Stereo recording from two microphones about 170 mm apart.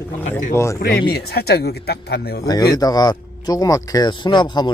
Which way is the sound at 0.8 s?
65° left (ahead or behind).